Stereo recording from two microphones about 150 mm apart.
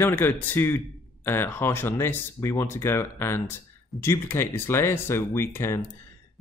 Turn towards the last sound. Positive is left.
turn(degrees=15)  # may be behind; listen again after turning